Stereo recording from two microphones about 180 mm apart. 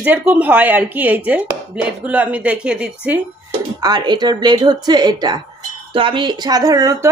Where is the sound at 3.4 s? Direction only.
25° right (ahead or behind).